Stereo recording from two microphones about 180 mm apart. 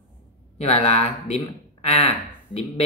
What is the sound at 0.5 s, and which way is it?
Speech, 35° left (ahead or behind).